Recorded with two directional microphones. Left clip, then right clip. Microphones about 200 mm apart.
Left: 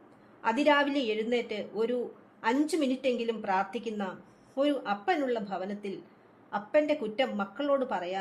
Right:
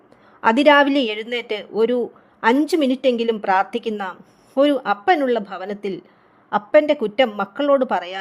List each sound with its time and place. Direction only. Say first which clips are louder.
0.4 s a woman's voice: right 12 dB; 45° right (ahead or behind)